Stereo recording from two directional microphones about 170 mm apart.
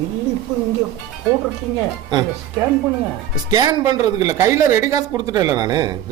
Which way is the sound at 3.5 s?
25° right (ahead or behind).